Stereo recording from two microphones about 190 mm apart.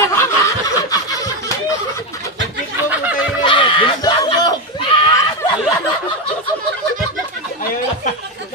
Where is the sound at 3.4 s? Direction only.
25° left (ahead or behind).